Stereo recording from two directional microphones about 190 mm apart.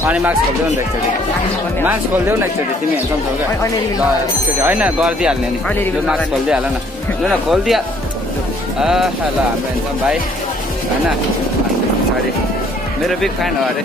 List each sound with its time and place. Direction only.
0.0 s speech: 10° right (ahead or behind)
4.6 s speech: 10° right (ahead or behind)